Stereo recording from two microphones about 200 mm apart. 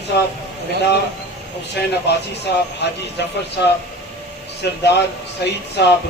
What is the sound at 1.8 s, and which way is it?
Speech, 55° left (ahead or behind).